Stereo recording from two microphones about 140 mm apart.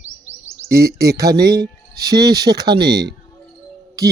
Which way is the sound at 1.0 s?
25° right (ahead or behind).